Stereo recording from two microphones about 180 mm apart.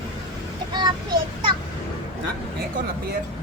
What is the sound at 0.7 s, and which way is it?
Child singing, 25° right (ahead or behind).